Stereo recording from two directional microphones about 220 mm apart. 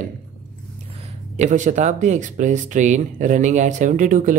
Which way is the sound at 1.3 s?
35° right (ahead or behind).